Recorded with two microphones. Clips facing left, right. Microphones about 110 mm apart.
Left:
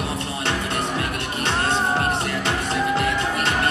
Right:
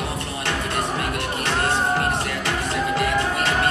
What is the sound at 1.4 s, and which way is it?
Music, 25° left (ahead or behind).